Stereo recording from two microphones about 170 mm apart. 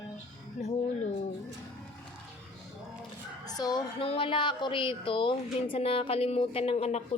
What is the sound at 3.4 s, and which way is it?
Speech, 25° left (ahead or behind).